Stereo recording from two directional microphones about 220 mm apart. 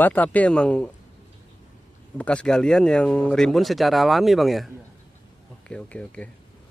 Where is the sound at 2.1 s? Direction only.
5° left (ahead or behind).